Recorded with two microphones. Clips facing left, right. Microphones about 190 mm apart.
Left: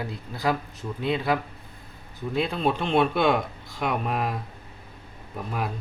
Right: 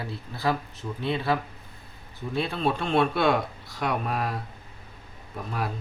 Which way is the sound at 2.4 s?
15° left (ahead or behind).